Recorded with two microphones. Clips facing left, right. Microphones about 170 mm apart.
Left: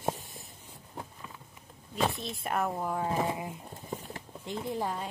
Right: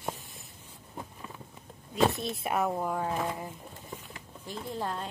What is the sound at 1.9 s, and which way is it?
Speech, 5° right (ahead or behind).